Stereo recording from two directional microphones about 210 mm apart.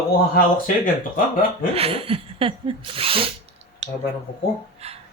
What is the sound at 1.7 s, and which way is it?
Sneeze, 25° right (ahead or behind).